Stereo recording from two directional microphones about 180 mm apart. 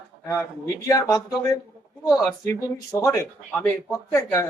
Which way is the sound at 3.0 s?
15° left (ahead or behind).